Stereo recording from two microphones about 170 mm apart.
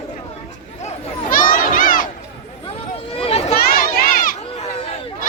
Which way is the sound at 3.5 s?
60° left (ahead or behind).